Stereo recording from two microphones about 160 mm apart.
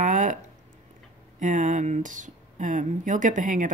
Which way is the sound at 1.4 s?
50° right (ahead or behind).